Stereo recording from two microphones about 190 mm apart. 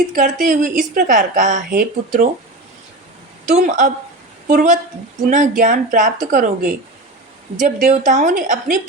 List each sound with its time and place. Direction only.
0.1 s speech: 45° right (ahead or behind)
3.5 s speech: 40° right (ahead or behind)